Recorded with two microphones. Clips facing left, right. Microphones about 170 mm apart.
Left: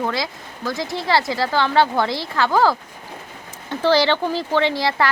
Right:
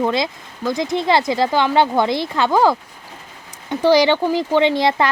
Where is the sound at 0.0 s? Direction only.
20° right (ahead or behind).